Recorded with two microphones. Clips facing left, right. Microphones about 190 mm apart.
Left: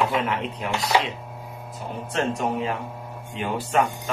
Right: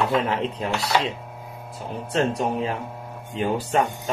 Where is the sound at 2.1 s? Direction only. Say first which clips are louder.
Right 2 dB; 35° right (ahead or behind).